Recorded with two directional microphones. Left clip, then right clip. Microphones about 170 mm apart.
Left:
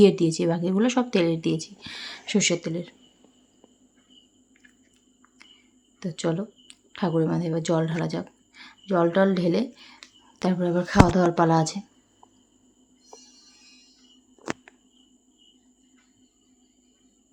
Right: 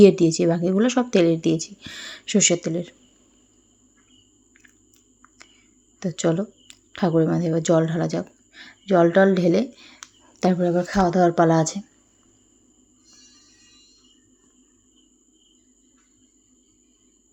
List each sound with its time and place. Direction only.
0.0 s a woman's voice: 15° right (ahead or behind)
6.0 s speech: 20° right (ahead or behind)
10.6 s speech: 5° right (ahead or behind)